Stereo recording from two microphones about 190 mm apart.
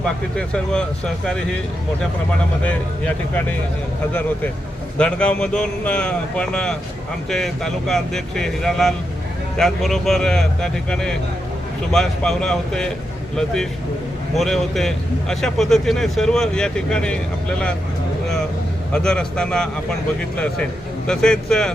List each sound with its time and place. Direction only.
0.0 s a man's voice: 5° left (ahead or behind)
2.6 s speech: 10° left (ahead or behind)
4.9 s a man's voice: 5° left (ahead or behind)
18.9 s a man's voice: 5° left (ahead or behind)
21.1 s a man's voice: 5° left (ahead or behind)